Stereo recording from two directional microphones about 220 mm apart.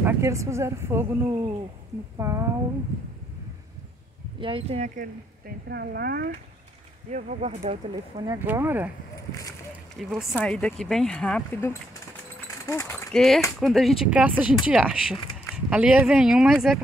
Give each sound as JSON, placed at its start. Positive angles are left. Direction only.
{"t": 0.0, "sound": "a woman's voice", "side_deg": -15}
{"t": 4.4, "sound": "speech", "side_deg": -25}
{"t": 5.7, "sound": "speech", "side_deg": -45}
{"t": 8.3, "sound": "a woman's voice", "side_deg": -10}
{"t": 9.1, "sound": "a sound", "side_deg": 15}
{"t": 9.9, "sound": "a woman's voice", "side_deg": -5}